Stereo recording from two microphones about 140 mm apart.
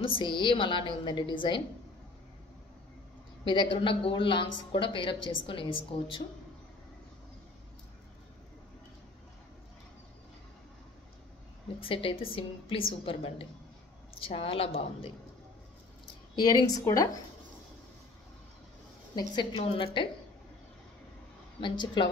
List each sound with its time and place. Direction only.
0.0 s a woman's voice: 40° left (ahead or behind)
3.4 s a woman's voice: 35° left (ahead or behind)
11.8 s a woman's voice: 40° left (ahead or behind)
16.3 s speech: 30° left (ahead or behind)
19.1 s a woman's voice: 35° left (ahead or behind)
21.5 s a woman's voice: 35° left (ahead or behind)